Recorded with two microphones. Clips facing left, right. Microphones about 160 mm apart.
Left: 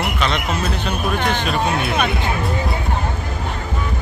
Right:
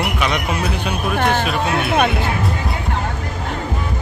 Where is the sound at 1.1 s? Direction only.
50° right (ahead or behind).